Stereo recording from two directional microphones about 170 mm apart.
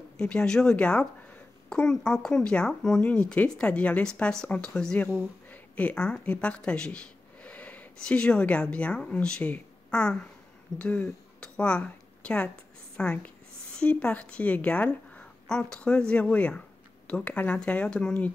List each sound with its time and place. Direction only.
0.2 s a woman's voice: 5° left (ahead or behind)